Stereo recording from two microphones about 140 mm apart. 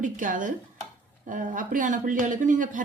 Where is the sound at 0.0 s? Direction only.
70° right (ahead or behind).